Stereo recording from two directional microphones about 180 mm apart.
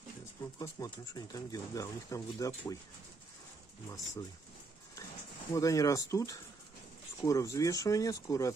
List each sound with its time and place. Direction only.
0.6 s speech: 20° left (ahead or behind)
5.5 s speech: 20° left (ahead or behind)